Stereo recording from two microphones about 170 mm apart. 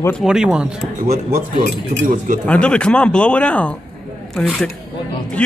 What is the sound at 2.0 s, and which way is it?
Speech, 50° right (ahead or behind).